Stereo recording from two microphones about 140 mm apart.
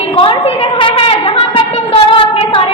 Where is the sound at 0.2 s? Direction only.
40° left (ahead or behind).